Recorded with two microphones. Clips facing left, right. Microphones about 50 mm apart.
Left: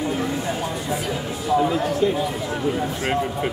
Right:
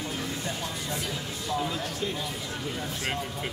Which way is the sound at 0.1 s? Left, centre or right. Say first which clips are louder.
Left 9 dB; centre.